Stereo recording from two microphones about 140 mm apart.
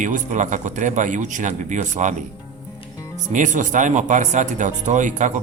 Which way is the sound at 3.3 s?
65° right (ahead or behind).